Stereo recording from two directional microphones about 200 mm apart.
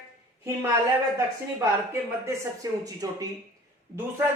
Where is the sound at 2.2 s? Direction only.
15° right (ahead or behind).